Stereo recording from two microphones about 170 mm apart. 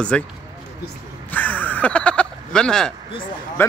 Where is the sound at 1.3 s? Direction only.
10° left (ahead or behind).